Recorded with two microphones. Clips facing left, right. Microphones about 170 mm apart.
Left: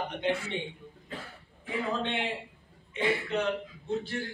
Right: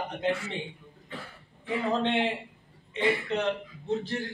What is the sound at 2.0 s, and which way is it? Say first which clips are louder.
Speech: right 6 dB; 35° right (ahead or behind).